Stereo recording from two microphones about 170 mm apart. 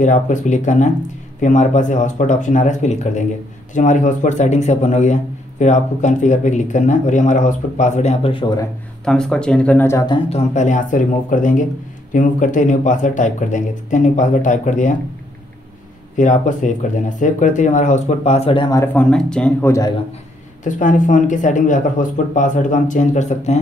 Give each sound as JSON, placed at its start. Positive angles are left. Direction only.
{"t": 0.0, "sound": "a man's voice", "side_deg": 45}
{"t": 9.0, "sound": "speech", "side_deg": 5}
{"t": 10.1, "sound": "a man's voice", "side_deg": 40}
{"t": 16.2, "sound": "a man's voice", "side_deg": 50}
{"t": 18.9, "sound": "speech", "side_deg": 5}
{"t": 20.6, "sound": "a man's voice", "side_deg": 50}